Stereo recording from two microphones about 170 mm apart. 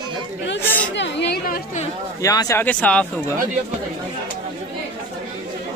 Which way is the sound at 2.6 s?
10° left (ahead or behind).